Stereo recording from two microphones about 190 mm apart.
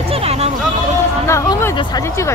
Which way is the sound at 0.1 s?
30° right (ahead or behind).